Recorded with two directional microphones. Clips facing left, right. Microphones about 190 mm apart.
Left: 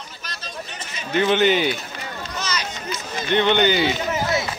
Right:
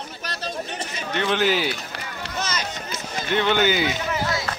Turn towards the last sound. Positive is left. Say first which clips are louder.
# left 3 dB
turn(degrees=25)  # may be behind; listen again after turning